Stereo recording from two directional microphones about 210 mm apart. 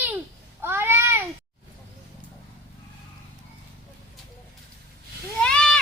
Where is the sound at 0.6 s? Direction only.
10° right (ahead or behind).